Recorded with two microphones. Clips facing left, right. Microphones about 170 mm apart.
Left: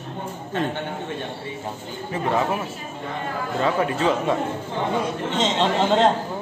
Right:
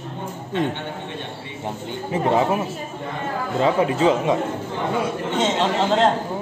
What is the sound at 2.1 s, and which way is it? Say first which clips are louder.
Speech: right 4 dB; 20° right (ahead or behind).